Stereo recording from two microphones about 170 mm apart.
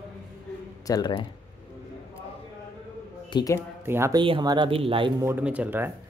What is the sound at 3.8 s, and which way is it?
Speech, 15° right (ahead or behind).